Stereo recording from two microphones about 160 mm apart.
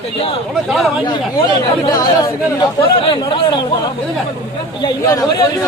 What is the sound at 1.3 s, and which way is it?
Speech, 25° left (ahead or behind).